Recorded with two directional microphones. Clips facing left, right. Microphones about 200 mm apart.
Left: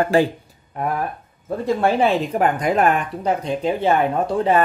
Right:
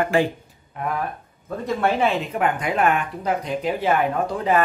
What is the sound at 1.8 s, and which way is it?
Speech, 35° left (ahead or behind).